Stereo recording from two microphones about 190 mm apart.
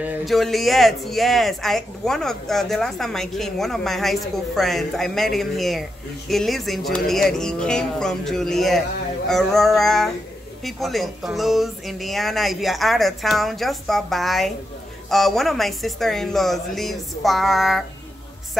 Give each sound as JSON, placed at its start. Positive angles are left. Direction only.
{"t": 0.0, "sound": "speech", "side_deg": 0}